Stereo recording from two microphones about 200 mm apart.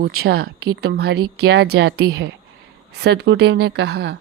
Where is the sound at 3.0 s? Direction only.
55° right (ahead or behind).